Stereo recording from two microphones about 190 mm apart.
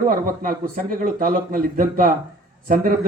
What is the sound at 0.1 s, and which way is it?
A man's voice, 50° right (ahead or behind).